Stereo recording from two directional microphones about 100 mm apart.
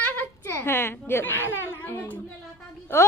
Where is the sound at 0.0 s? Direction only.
20° left (ahead or behind).